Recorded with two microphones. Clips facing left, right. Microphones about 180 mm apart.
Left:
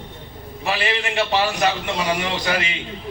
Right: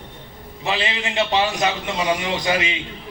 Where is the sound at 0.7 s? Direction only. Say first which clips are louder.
Left 1 dB; 20° right (ahead or behind).